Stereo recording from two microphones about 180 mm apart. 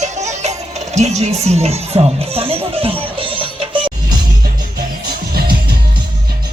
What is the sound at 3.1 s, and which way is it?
Music, 30° right (ahead or behind).